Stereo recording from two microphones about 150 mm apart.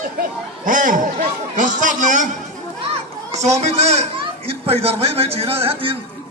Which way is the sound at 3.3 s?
45° right (ahead or behind).